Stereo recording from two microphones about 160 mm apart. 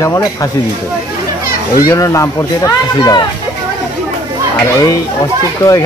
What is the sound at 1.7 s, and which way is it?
Speech, 20° left (ahead or behind).